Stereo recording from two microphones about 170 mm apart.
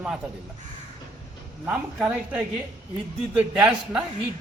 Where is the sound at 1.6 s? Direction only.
10° right (ahead or behind).